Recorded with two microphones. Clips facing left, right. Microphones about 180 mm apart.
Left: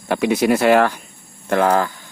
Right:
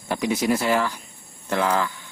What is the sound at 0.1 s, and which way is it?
Speech, 65° left (ahead or behind).